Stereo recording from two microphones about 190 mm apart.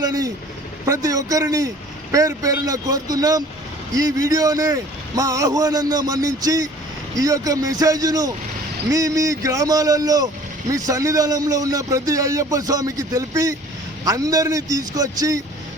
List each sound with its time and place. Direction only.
0.0 s a man's voice: 20° right (ahead or behind)